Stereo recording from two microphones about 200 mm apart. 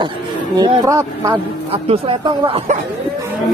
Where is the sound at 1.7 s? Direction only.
30° right (ahead or behind).